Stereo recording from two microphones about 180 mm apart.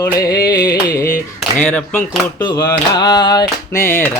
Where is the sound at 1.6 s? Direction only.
10° left (ahead or behind).